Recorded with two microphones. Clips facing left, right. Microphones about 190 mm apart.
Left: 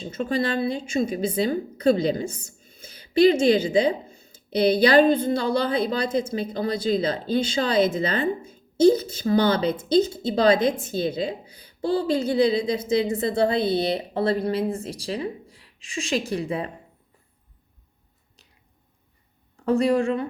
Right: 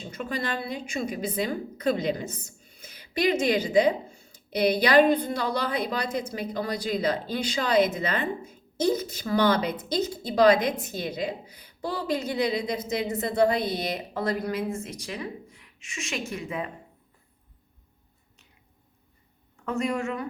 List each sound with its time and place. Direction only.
0.0 s a woman's voice: 30° left (ahead or behind)
19.6 s a woman's voice: 35° left (ahead or behind)